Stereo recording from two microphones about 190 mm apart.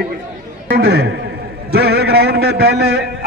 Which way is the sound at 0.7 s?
60° right (ahead or behind).